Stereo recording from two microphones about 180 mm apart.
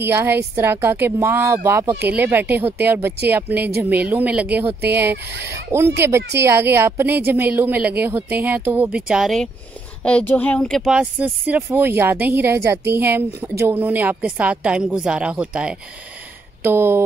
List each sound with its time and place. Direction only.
0.0 s speech: 10° right (ahead or behind)